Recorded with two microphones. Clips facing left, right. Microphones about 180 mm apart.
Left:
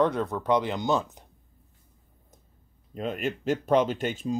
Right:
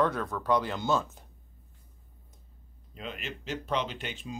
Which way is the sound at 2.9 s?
45° left (ahead or behind).